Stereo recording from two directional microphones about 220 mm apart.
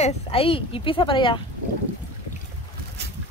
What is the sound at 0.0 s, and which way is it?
A woman's voice, 25° left (ahead or behind).